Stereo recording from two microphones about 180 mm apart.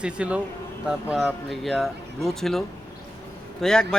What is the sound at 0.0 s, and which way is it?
Speech, 5° right (ahead or behind).